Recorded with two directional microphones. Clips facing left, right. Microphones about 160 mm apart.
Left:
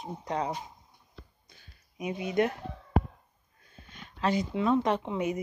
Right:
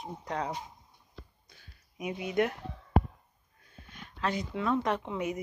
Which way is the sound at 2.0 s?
5° right (ahead or behind).